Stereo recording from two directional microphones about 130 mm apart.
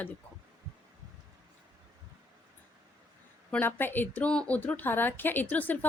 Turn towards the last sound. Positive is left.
turn(degrees=15)  # may be behind; listen again after turning